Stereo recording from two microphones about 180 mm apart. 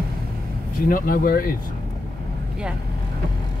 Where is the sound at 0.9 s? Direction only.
55° left (ahead or behind).